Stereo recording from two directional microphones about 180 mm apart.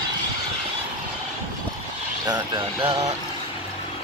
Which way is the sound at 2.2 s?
25° right (ahead or behind).